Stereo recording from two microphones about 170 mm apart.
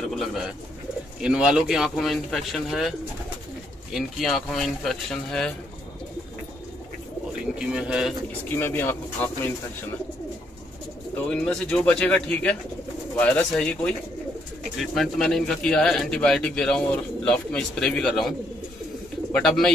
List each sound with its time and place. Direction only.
0.1 s speech: centre (ahead or behind)
3.9 s speech: centre (ahead or behind)
7.5 s speech: 5° right (ahead or behind)
8.5 s speech: 15° left (ahead or behind)
11.2 s speech: 5° left (ahead or behind)
19.3 s speech: centre (ahead or behind)